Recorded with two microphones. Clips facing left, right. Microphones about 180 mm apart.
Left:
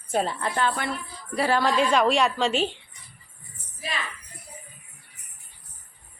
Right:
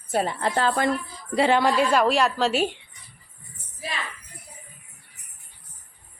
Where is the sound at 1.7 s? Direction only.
5° right (ahead or behind).